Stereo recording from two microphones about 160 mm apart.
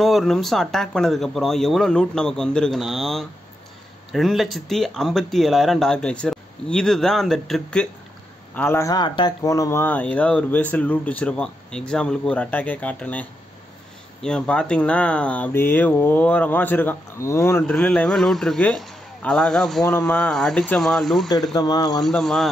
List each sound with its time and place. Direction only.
0.0 s speech: centre (ahead or behind)
8.5 s speech: 15° left (ahead or behind)
21.3 s speech: 25° left (ahead or behind)
22.0 s speech: centre (ahead or behind)